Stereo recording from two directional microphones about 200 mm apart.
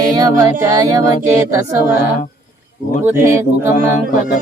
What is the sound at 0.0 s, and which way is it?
Music, 20° right (ahead or behind).